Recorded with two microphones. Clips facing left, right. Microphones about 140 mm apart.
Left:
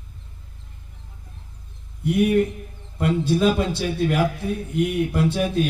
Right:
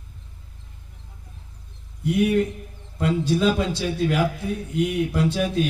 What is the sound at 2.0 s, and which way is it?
Speech, 55° left (ahead or behind).